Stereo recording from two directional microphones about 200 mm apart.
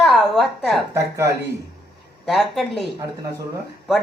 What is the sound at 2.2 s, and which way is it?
Speech, centre (ahead or behind).